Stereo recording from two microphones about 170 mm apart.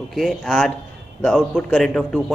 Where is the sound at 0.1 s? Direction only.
Centre (ahead or behind).